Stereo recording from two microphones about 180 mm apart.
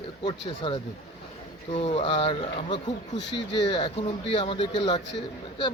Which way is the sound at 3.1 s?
75° left (ahead or behind).